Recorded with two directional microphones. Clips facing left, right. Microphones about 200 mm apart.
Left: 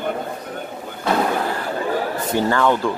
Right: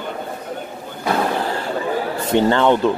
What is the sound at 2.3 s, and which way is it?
Speech, 25° right (ahead or behind).